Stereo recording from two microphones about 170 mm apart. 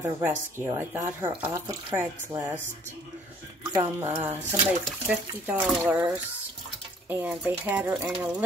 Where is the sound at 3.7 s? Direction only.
15° right (ahead or behind).